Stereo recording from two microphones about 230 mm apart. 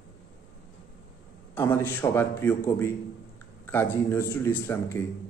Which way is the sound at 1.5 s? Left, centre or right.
Centre.